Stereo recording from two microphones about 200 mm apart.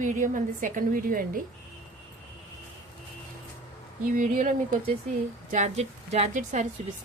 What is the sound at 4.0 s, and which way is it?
A woman's voice, 40° right (ahead or behind).